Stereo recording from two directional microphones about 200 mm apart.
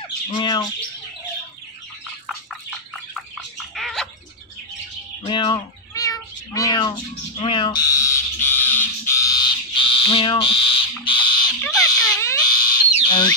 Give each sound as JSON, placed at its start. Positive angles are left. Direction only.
{"t": 0.3, "sound": "squawk", "side_deg": 20}
{"t": 3.7, "sound": "bird", "side_deg": 0}
{"t": 5.2, "sound": "cat", "side_deg": 25}
{"t": 7.3, "sound": "bird", "side_deg": 25}
{"t": 11.6, "sound": "fire alarm", "side_deg": 20}